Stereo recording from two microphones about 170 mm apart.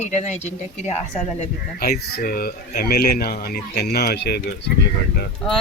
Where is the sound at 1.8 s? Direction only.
65° left (ahead or behind).